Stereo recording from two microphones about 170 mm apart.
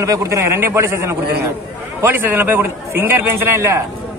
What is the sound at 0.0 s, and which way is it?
A man's voice, 20° right (ahead or behind).